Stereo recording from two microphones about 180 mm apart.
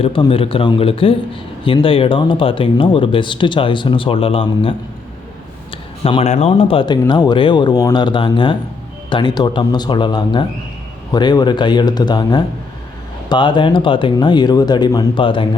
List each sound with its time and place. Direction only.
0.0 s speech: 30° left (ahead or behind)
6.0 s speech: 30° left (ahead or behind)